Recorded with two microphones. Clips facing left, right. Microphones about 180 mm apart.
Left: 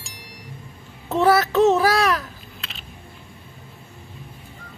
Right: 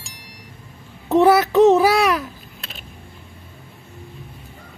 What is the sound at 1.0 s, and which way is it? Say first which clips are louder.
A child's voice: right 4 dB; 15° right (ahead or behind).